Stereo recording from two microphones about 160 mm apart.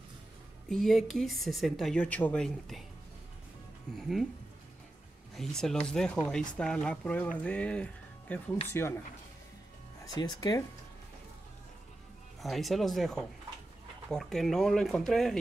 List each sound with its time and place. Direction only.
0.7 s a woman's voice: centre (ahead or behind)
5.3 s a woman's voice: centre (ahead or behind)
10.0 s speech: 25° left (ahead or behind)
12.4 s a woman's voice: centre (ahead or behind)